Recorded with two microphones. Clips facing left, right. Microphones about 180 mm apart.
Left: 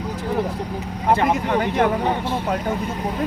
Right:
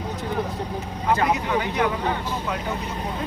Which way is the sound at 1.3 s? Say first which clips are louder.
Left 3 dB; 50° left (ahead or behind).